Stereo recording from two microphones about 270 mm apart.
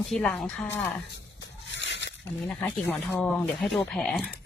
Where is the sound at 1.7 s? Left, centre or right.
Left.